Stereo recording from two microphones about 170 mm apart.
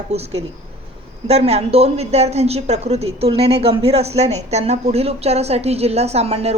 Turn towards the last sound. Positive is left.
turn(degrees=-35)  # may be behind; listen again after turning